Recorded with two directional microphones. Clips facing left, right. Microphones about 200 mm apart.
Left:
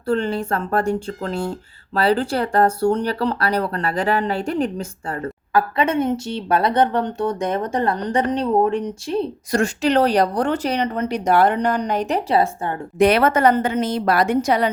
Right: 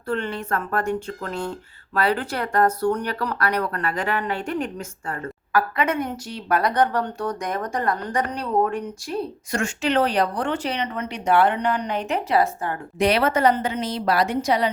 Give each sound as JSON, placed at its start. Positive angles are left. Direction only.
{"t": 0.1, "sound": "speech", "side_deg": 30}
{"t": 9.5, "sound": "speech", "side_deg": 35}
{"t": 13.0, "sound": "a woman's voice", "side_deg": 50}